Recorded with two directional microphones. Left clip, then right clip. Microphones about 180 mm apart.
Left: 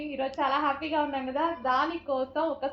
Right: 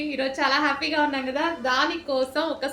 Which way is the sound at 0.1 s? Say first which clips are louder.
Right 4 dB; 25° right (ahead or behind).